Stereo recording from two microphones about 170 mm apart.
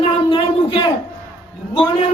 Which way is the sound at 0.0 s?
30° left (ahead or behind).